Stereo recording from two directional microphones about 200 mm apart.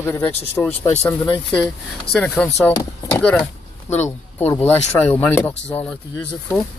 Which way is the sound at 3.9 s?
35° left (ahead or behind).